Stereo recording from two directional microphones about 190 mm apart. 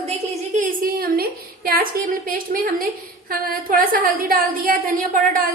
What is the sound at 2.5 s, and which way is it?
A woman's voice, 45° right (ahead or behind).